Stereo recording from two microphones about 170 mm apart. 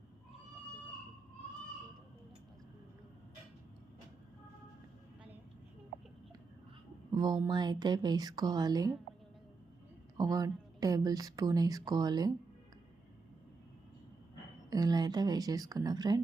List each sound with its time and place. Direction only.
7.1 s speech: 25° right (ahead or behind)
10.2 s speech: 20° right (ahead or behind)
14.7 s speech: 25° right (ahead or behind)